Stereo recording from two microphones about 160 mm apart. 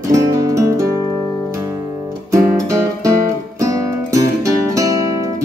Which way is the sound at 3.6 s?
20° right (ahead or behind).